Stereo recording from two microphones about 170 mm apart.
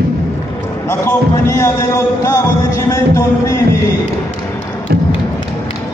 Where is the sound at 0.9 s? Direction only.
15° left (ahead or behind).